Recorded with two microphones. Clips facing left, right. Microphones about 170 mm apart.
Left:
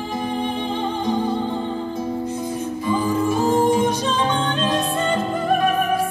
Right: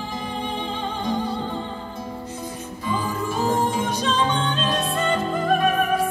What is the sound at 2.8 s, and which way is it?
Music, 15° left (ahead or behind).